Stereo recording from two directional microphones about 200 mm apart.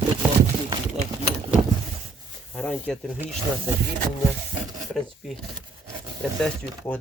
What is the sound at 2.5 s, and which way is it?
Speech, 5° left (ahead or behind).